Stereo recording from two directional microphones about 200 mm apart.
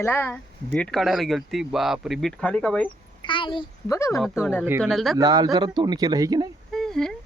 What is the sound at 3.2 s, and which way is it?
A child's voice, 25° left (ahead or behind).